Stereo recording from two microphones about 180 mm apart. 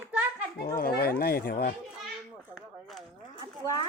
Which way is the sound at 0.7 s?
60° left (ahead or behind).